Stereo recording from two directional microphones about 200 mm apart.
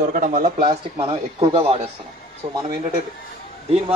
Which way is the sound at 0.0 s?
45° right (ahead or behind).